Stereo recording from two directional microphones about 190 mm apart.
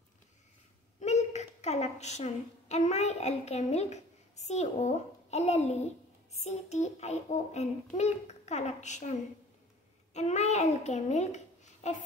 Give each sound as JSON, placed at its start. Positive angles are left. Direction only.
{"t": 0.9, "sound": "a woman's voice", "side_deg": 35}
{"t": 6.4, "sound": "child singing", "side_deg": 35}
{"t": 10.1, "sound": "a child's voice", "side_deg": 35}